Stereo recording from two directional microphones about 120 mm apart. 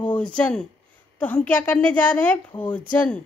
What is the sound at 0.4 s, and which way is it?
A woman's voice, 10° left (ahead or behind).